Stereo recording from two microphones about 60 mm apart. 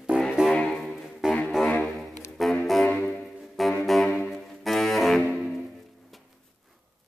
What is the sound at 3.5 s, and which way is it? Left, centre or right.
Saxophone, centre.